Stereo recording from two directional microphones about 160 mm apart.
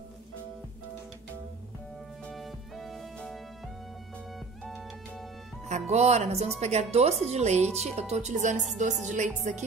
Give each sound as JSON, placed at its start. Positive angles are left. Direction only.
{"t": 2.2, "sound": "music", "side_deg": 0}
{"t": 5.7, "sound": "speech", "side_deg": -45}